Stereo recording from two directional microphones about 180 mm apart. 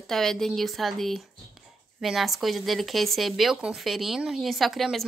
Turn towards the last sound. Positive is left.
turn(degrees=0)  # may be behind; listen again after turning